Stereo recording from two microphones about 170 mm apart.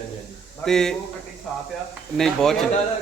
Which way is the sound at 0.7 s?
5° left (ahead or behind).